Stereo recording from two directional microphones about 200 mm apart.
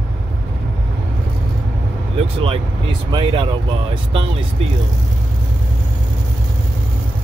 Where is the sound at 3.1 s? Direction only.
25° right (ahead or behind).